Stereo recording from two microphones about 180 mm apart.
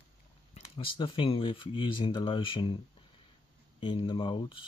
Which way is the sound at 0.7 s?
30° left (ahead or behind).